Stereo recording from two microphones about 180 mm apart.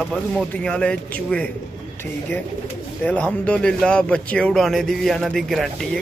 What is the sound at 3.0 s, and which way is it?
Speech, 5° left (ahead or behind).